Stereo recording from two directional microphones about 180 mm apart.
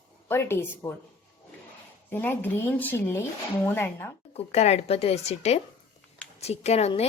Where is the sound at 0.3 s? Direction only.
15° left (ahead or behind).